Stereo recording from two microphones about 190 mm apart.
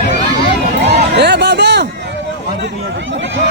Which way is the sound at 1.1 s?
60° right (ahead or behind).